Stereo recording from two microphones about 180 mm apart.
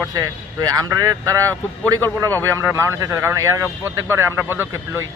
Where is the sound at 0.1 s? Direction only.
20° right (ahead or behind).